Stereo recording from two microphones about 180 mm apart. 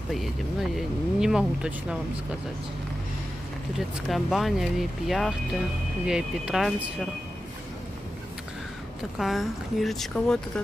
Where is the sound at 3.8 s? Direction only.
Centre (ahead or behind).